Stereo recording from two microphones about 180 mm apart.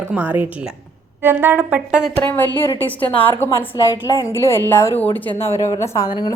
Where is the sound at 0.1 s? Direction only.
10° right (ahead or behind).